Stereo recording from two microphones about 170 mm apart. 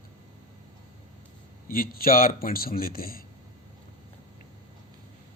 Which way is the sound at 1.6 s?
60° left (ahead or behind).